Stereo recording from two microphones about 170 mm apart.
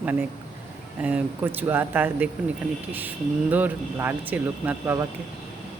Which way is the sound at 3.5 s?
10° right (ahead or behind).